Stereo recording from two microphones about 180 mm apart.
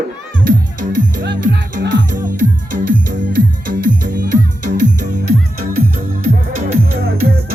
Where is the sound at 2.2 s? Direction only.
50° right (ahead or behind).